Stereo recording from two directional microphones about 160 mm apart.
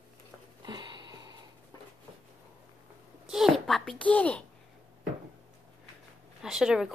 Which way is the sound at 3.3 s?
Centre (ahead or behind).